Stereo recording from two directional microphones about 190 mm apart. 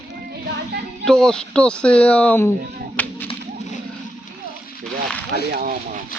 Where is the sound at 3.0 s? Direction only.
10° left (ahead or behind).